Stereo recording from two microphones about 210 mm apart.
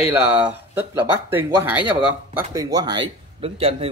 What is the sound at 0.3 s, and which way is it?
Speech, 10° right (ahead or behind).